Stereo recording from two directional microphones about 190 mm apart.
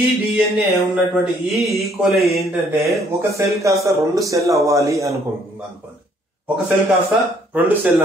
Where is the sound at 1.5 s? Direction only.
Centre (ahead or behind).